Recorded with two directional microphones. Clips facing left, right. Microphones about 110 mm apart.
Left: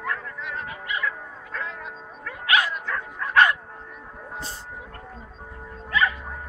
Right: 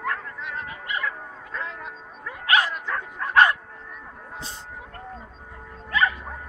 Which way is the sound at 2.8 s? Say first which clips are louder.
Right 1 dB; 30° right (ahead or behind).